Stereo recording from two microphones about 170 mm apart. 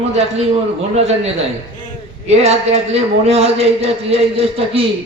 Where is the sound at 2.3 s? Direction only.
40° right (ahead or behind).